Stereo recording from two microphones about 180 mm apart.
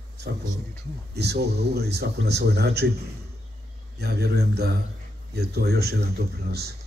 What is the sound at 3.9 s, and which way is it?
Speech, 65° right (ahead or behind).